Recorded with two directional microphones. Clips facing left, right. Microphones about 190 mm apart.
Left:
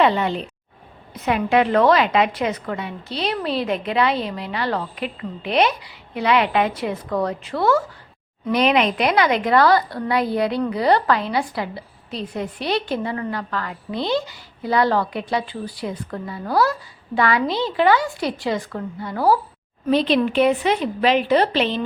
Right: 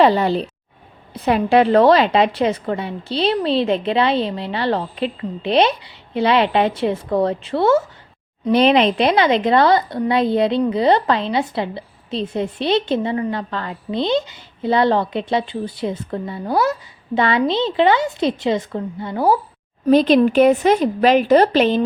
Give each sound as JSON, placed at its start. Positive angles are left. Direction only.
{"t": 0.0, "sound": "a woman's voice", "side_deg": -35}
{"t": 19.9, "sound": "a woman's voice", "side_deg": -45}